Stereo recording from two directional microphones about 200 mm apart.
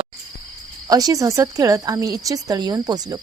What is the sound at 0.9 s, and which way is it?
Speech, 20° right (ahead or behind).